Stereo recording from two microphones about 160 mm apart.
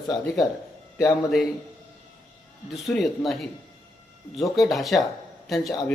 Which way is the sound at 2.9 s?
Centre (ahead or behind).